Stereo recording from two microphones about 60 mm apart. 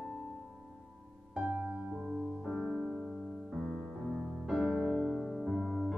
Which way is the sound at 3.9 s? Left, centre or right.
Centre.